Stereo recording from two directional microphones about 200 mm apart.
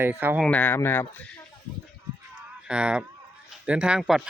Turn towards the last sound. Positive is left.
turn(degrees=0)  # may be behind; listen again after turning